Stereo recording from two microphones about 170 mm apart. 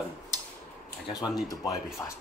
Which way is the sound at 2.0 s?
20° left (ahead or behind).